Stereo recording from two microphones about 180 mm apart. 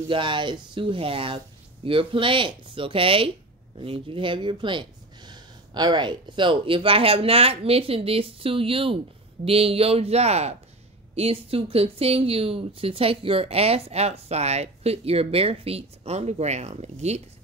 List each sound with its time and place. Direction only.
0.1 s speech: 25° right (ahead or behind)